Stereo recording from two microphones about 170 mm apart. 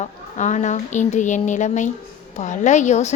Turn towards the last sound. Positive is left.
turn(degrees=40)  # may be behind; listen again after turning